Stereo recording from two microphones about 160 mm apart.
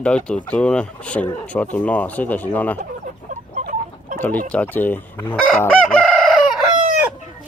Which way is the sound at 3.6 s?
50° right (ahead or behind).